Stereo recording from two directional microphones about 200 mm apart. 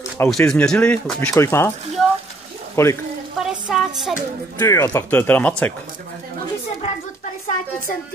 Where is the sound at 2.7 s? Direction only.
15° left (ahead or behind).